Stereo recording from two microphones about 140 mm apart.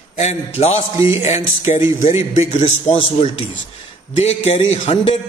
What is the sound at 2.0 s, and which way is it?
A man's voice, 50° left (ahead or behind).